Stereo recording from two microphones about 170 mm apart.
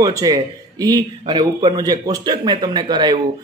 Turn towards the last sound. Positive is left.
turn(degrees=-25)  # may be behind; listen again after turning